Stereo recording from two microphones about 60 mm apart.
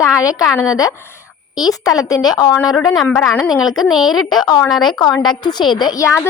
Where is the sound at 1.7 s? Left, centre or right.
Left.